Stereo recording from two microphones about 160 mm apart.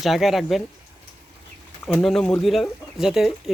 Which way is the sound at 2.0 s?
5° left (ahead or behind).